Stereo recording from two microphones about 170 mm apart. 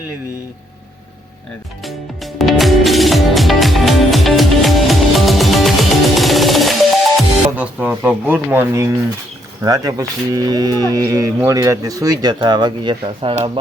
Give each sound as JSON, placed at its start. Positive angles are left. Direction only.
{"t": 1.8, "sound": "music", "side_deg": 0}
{"t": 7.2, "sound": "speech", "side_deg": -10}